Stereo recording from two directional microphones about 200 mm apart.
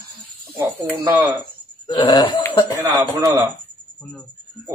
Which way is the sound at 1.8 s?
20° left (ahead or behind).